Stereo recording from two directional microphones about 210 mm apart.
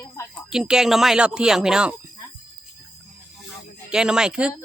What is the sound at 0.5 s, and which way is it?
Speech, 5° right (ahead or behind).